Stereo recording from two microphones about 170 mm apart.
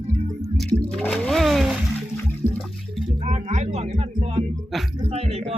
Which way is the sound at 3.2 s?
40° right (ahead or behind).